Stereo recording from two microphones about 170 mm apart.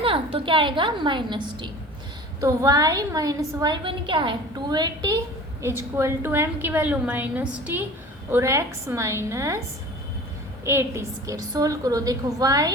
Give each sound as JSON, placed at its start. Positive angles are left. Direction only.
{"t": 0.0, "sound": "a woman's voice", "side_deg": -35}
{"t": 10.7, "sound": "a woman's voice", "side_deg": -15}